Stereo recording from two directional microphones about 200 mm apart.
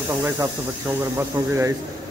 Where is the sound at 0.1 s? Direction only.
20° right (ahead or behind).